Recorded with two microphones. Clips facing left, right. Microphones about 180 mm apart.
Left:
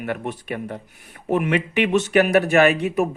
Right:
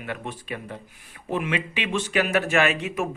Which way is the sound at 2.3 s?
40° left (ahead or behind).